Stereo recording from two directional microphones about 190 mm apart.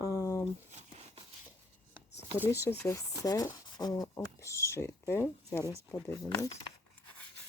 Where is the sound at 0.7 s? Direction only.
35° right (ahead or behind).